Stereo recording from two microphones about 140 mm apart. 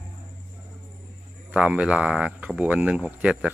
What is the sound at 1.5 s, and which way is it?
Speech, 10° right (ahead or behind).